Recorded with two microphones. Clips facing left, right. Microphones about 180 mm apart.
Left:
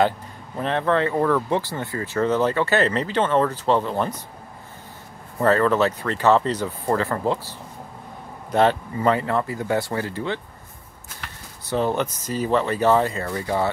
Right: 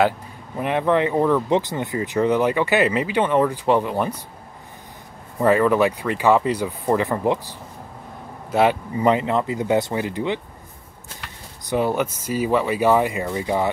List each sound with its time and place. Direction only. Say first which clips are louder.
0.6 s speech: right 2 dB; 15° right (ahead or behind)
5.4 s speech: right 2 dB; 10° right (ahead or behind)
11.6 s speech: right 1 dB; 10° right (ahead or behind)